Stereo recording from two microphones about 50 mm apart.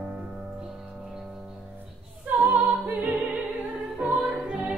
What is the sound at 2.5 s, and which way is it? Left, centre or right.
Opera, right.